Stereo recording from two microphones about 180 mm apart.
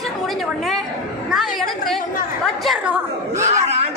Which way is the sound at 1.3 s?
Centre (ahead or behind).